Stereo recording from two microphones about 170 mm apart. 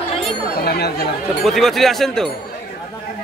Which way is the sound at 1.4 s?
Centre (ahead or behind).